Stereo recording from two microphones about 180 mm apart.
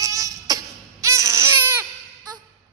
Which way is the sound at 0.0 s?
20° right (ahead or behind).